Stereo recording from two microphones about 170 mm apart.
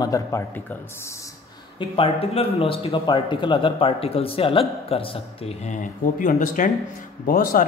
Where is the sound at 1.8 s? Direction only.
35° left (ahead or behind).